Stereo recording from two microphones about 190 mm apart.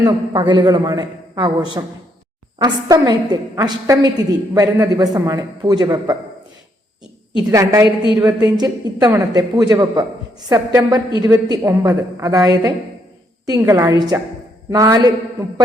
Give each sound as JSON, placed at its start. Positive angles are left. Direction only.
{"t": 0.0, "sound": "a man's voice", "side_deg": -20}
{"t": 7.5, "sound": "a woman's voice", "side_deg": -15}